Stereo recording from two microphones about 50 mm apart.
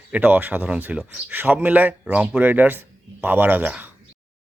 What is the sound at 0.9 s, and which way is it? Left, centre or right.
Speech, right.